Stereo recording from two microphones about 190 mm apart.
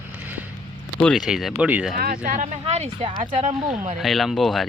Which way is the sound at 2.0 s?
50° right (ahead or behind).